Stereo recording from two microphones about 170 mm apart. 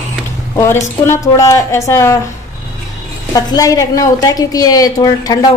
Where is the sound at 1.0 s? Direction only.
15° left (ahead or behind).